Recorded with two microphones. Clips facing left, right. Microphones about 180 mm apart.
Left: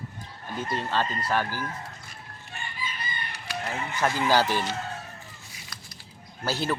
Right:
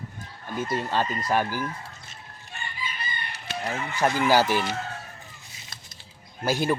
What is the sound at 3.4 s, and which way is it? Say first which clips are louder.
Speech: right 2 dB; 20° right (ahead or behind).